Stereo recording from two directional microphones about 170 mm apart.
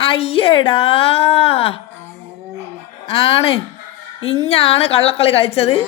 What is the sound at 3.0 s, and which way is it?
A woman's voice, 35° left (ahead or behind).